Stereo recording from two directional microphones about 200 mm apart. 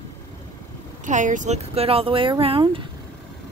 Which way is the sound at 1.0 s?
40° right (ahead or behind).